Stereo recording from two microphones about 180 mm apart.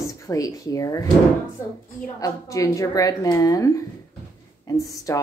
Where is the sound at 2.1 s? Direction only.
20° left (ahead or behind).